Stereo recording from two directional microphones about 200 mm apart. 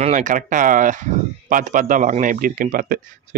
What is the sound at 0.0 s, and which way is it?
A man's voice, 40° right (ahead or behind).